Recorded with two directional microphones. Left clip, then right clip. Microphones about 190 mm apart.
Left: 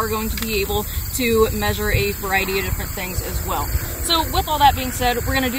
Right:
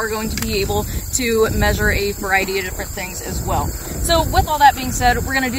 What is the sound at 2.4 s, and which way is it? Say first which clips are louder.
Speech: right 1 dB; 40° right (ahead or behind).